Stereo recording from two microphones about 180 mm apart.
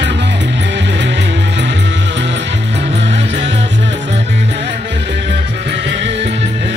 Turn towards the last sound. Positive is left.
turn(degrees=-75)  # may be behind; listen again after turning